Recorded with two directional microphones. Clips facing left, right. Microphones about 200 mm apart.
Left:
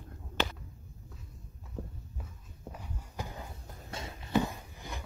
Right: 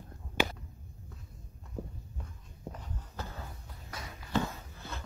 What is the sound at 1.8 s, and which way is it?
Walk, 10° right (ahead or behind).